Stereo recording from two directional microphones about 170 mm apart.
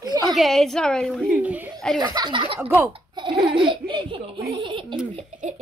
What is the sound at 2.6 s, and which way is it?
Speech, 10° right (ahead or behind).